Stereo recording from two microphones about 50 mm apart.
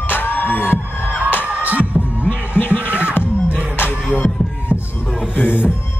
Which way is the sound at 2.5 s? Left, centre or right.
Left.